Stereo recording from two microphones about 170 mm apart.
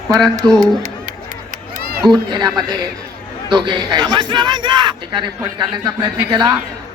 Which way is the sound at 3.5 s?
25° right (ahead or behind).